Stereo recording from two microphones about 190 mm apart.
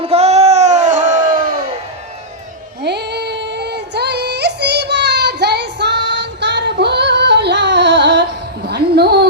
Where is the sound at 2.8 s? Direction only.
60° right (ahead or behind).